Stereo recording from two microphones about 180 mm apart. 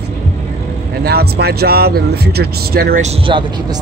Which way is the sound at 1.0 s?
60° right (ahead or behind).